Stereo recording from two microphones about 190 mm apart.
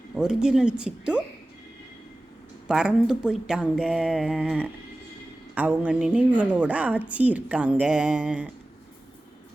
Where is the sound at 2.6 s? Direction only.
5° right (ahead or behind).